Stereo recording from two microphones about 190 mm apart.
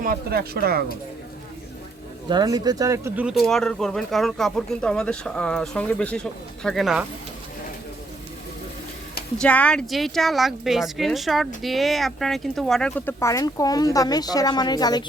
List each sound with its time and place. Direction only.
0.0 s speech: 50° right (ahead or behind)
2.3 s speech: 20° right (ahead or behind); by 7.0 s centre (ahead or behind)
9.4 s speech: 5° left (ahead or behind)
13.1 s speech: 15° left (ahead or behind)